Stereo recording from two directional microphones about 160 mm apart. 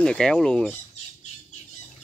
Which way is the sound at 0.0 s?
5° left (ahead or behind).